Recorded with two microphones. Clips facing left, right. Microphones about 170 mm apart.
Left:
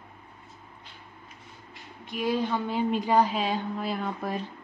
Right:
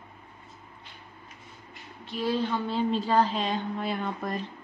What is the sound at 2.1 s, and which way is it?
A woman's voice, 15° left (ahead or behind).